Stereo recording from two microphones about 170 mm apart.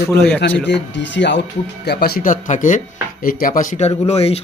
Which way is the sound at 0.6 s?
90° left.